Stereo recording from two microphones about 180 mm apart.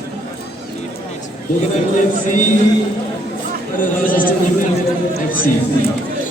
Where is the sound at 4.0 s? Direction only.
50° left (ahead or behind).